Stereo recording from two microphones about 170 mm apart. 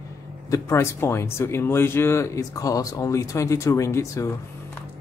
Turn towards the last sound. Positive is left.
turn(degrees=20)  # may be behind; listen again after turning